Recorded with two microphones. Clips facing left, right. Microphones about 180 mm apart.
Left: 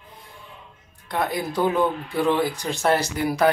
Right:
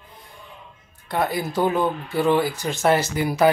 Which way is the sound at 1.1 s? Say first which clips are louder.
Right 2 dB; 5° right (ahead or behind).